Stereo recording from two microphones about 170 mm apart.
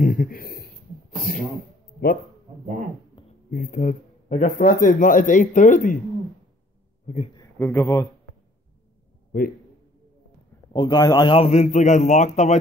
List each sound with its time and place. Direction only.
0.0 s a sound: 50° left (ahead or behind)
3.4 s speech: 55° left (ahead or behind)
7.1 s speech: 45° left (ahead or behind)
7.5 s speech: 10° left (ahead or behind)
10.7 s a man's voice: 25° left (ahead or behind); by 12.5 s 45° left (ahead or behind)